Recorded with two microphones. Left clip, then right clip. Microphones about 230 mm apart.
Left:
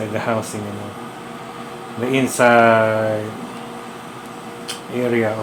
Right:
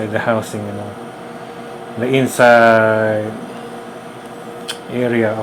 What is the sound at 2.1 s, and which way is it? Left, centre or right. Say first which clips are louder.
Speech: right 4 dB; right.